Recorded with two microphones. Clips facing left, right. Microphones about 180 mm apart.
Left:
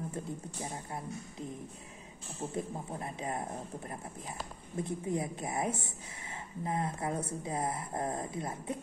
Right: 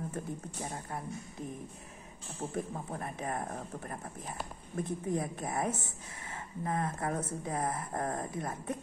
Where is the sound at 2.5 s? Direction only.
20° left (ahead or behind).